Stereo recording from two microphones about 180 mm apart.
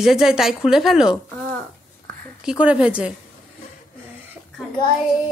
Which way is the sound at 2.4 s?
5° right (ahead or behind).